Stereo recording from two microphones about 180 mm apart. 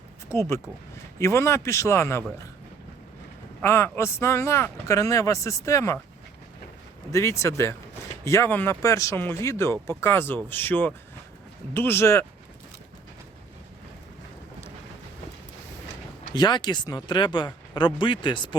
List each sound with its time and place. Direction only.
0.3 s speech: 15° left (ahead or behind)
3.6 s speech: 15° left (ahead or behind)
7.1 s speech: 15° left (ahead or behind)
16.3 s speech: 25° left (ahead or behind)